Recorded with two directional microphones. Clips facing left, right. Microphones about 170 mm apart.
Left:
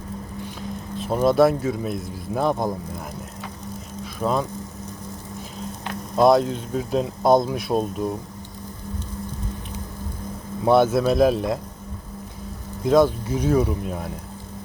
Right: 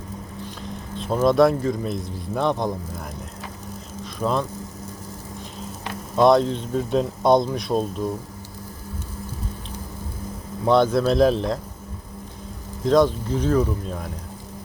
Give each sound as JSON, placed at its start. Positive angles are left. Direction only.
{"t": 0.9, "sound": "speech", "side_deg": 5}
{"t": 4.0, "sound": "vehicle", "side_deg": 5}
{"t": 6.1, "sound": "speech", "side_deg": 0}
{"t": 10.7, "sound": "speech", "side_deg": 5}
{"t": 12.8, "sound": "speech", "side_deg": 5}